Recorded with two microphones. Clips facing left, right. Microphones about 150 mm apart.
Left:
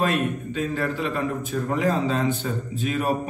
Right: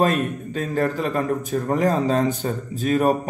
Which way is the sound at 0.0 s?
40° right (ahead or behind).